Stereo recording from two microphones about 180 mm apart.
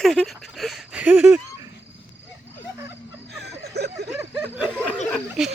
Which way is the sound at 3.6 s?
65° right (ahead or behind).